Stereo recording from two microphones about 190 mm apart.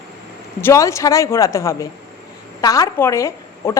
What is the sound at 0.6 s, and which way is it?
A woman's voice, 15° left (ahead or behind).